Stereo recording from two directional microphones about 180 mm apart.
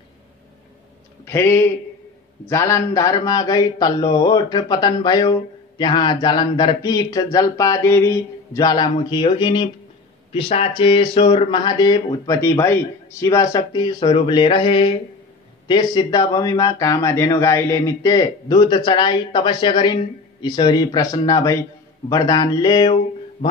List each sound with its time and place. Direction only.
1.2 s a man's voice: 15° left (ahead or behind)